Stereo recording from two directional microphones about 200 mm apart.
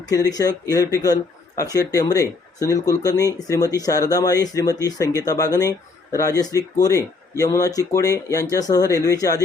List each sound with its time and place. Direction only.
0.1 s speech: 15° left (ahead or behind)